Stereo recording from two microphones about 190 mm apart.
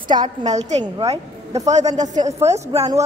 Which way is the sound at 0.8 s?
20° right (ahead or behind).